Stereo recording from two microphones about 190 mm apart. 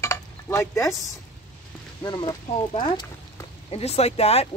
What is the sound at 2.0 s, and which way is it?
Speech, 20° left (ahead or behind).